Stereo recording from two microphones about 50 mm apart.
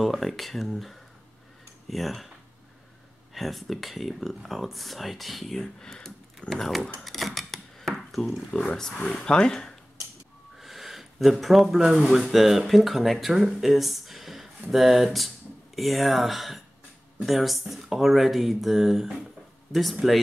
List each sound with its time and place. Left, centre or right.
0.0 s speech: centre
3.3 s speech: centre
7.0 s a sound: centre
8.5 s speech: centre
10.6 s speech: centre